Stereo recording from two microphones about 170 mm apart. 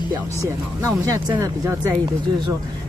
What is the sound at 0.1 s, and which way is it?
A woman's voice, 20° right (ahead or behind).